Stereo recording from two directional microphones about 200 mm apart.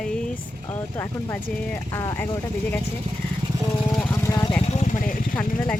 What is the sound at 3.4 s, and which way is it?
Vehicle, 25° right (ahead or behind).